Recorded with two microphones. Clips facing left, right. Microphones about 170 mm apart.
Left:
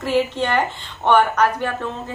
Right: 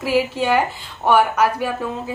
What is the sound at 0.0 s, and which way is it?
A woman's voice, 10° right (ahead or behind).